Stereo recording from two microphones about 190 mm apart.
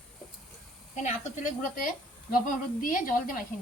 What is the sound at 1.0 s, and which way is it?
Speech, 40° left (ahead or behind).